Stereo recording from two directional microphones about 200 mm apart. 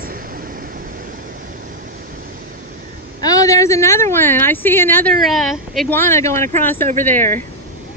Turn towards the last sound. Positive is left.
turn(degrees=10)  # may be behind; listen again after turning